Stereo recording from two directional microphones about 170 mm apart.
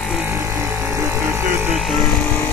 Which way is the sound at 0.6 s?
15° right (ahead or behind).